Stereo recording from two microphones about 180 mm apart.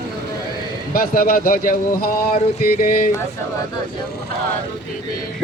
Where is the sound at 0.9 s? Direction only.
55° left (ahead or behind).